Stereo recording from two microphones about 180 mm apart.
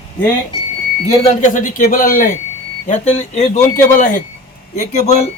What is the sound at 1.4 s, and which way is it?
Speech, 45° left (ahead or behind).